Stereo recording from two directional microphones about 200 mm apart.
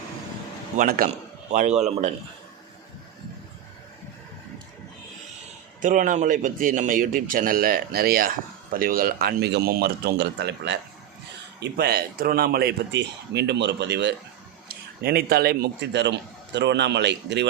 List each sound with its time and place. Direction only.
0.8 s a man's voice: 45° right (ahead or behind)
5.8 s a man's voice: 40° right (ahead or behind); by 17.4 s 60° right (ahead or behind)